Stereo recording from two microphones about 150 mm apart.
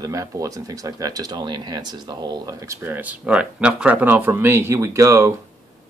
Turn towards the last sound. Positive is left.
turn(degrees=-20)  # may be behind; listen again after turning